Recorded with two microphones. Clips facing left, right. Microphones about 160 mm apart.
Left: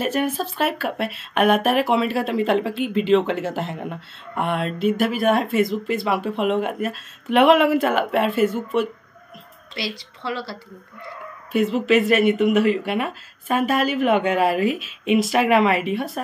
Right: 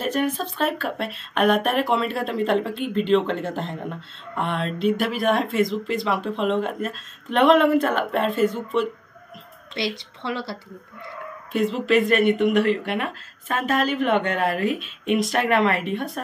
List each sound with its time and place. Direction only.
0.0 s speech: 5° left (ahead or behind)
9.8 s speech: 25° right (ahead or behind)
11.5 s speech: 5° left (ahead or behind)